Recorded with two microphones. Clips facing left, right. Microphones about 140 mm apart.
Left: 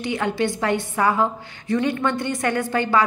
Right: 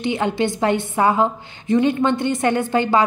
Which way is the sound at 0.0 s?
25° right (ahead or behind).